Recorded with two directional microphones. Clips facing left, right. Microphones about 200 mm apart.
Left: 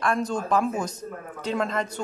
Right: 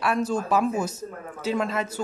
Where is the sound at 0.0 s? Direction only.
5° right (ahead or behind).